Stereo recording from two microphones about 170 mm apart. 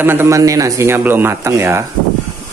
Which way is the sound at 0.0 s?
15° right (ahead or behind).